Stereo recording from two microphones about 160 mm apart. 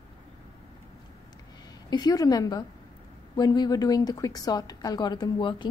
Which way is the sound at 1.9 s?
25° left (ahead or behind).